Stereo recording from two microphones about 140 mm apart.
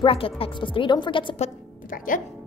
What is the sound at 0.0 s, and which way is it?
A woman's voice, 40° left (ahead or behind).